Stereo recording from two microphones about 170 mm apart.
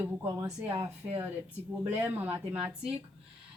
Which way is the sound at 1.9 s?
10° right (ahead or behind).